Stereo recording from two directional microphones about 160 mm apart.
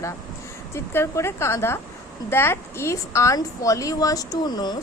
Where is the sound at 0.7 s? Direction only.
15° left (ahead or behind).